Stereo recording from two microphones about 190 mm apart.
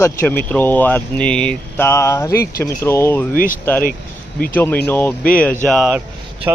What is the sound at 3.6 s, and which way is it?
Speech, 10° left (ahead or behind).